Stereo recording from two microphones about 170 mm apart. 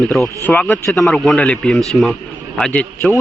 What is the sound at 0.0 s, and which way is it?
A man's voice, centre (ahead or behind).